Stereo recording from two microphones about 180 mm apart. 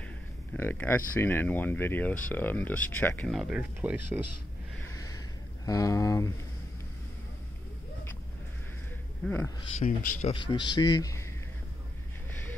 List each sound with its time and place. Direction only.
0.5 s speech: 10° left (ahead or behind)
3.3 s speech: 5° right (ahead or behind)
4.8 s a sound: 20° left (ahead or behind)
5.7 s speech: 20° left (ahead or behind)
9.2 s speech: 5° left (ahead or behind)
9.8 s speech: 45° left (ahead or behind)
10.3 s speech: 25° left (ahead or behind)